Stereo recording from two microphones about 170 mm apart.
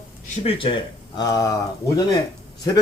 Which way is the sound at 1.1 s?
25° left (ahead or behind).